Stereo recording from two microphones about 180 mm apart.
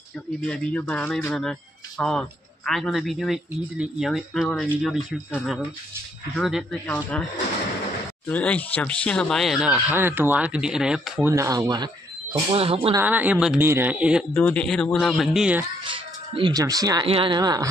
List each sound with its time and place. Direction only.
0.4 s speech: 10° left (ahead or behind)
8.3 s speech: 10° left (ahead or behind); by 12.9 s 30° right (ahead or behind)
12.9 s speech: 10° right (ahead or behind)
14.3 s speech: 5° left (ahead or behind)
15.8 s speech: 30° right (ahead or behind)